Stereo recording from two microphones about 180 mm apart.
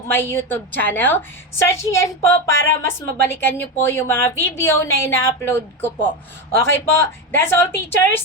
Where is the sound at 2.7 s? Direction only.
10° left (ahead or behind).